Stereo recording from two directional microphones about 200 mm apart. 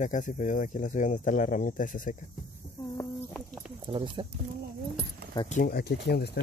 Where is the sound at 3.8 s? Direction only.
25° right (ahead or behind).